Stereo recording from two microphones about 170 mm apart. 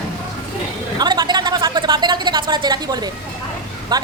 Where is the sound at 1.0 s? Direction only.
25° right (ahead or behind).